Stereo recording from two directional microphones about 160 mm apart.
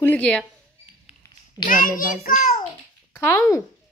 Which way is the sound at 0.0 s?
10° left (ahead or behind).